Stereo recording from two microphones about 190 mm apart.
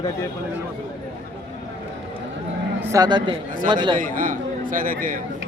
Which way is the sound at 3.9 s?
45° right (ahead or behind).